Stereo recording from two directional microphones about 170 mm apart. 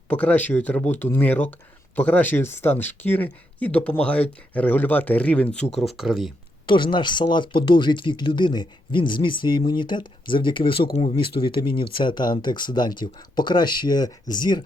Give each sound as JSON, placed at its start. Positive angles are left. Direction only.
{"t": 0.1, "sound": "speech", "side_deg": 10}
{"t": 6.7, "sound": "speech", "side_deg": 30}